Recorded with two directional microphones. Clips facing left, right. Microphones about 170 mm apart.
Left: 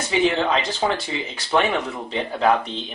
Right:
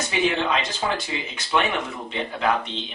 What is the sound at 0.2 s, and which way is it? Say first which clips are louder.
Speech: left 2 dB; 35° left (ahead or behind).